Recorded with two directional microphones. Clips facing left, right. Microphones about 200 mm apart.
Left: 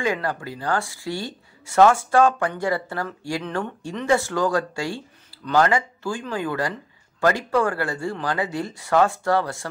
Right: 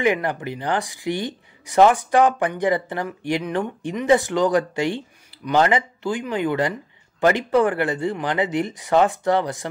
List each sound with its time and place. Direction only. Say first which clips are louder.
0.0 s speech: right 4 dB; 20° right (ahead or behind)